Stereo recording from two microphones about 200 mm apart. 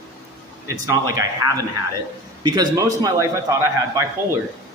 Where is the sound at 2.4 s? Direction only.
20° right (ahead or behind).